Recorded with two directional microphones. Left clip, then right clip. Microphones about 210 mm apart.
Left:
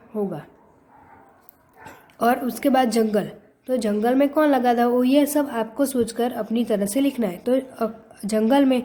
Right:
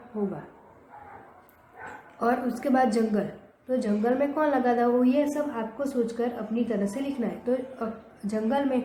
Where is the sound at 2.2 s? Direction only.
45° left (ahead or behind).